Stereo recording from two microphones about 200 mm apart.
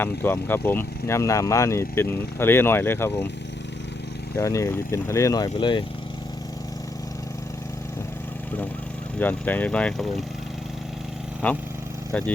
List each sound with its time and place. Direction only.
0.0 s speech: 10° left (ahead or behind)
4.4 s speech: 15° left (ahead or behind)
9.1 s speech: 10° left (ahead or behind)
11.4 s speech: 10° left (ahead or behind)